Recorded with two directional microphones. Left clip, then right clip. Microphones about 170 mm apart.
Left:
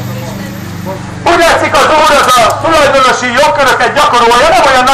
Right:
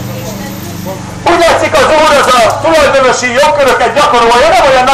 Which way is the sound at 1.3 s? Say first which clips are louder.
Even; 5° left (ahead or behind).